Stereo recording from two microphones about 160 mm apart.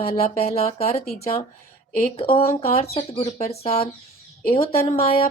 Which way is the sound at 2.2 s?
40° left (ahead or behind).